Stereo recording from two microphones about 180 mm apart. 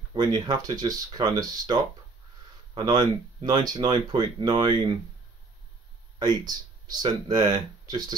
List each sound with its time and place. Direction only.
0.1 s speech: 25° right (ahead or behind)
6.4 s speech: 25° right (ahead or behind)